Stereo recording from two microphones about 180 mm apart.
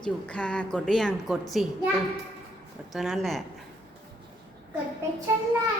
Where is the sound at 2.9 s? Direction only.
Centre (ahead or behind).